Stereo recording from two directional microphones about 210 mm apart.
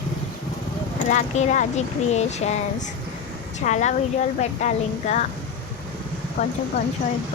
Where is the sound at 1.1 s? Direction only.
35° left (ahead or behind).